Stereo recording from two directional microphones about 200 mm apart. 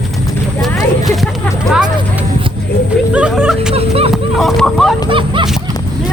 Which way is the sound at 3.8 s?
30° right (ahead or behind).